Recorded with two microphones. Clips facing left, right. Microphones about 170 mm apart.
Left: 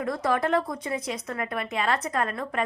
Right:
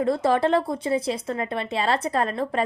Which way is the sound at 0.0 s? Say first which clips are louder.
Right 5 dB; 30° right (ahead or behind).